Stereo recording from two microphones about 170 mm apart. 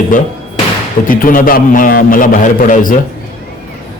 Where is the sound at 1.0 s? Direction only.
55° left (ahead or behind).